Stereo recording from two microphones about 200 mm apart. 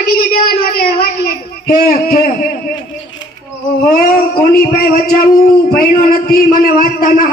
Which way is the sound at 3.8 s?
45° left (ahead or behind).